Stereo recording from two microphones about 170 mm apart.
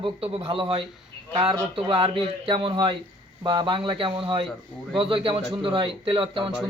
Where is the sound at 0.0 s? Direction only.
30° right (ahead or behind).